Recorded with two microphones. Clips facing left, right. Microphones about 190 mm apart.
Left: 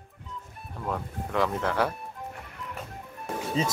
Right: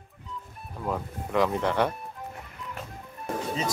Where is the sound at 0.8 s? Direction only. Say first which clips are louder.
Right 1 dB; 5° right (ahead or behind).